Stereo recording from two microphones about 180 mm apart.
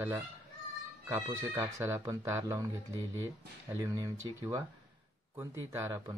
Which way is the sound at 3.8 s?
20° right (ahead or behind).